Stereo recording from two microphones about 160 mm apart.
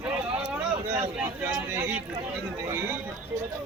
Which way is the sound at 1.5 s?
10° right (ahead or behind).